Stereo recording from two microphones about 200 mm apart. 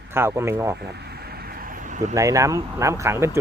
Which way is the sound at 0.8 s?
55° right (ahead or behind).